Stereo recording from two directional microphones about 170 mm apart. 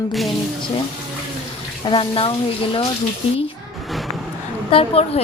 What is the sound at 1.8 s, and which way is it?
Speech, 30° left (ahead or behind).